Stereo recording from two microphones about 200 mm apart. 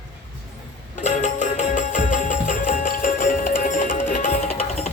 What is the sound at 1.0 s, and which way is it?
Music, 35° left (ahead or behind).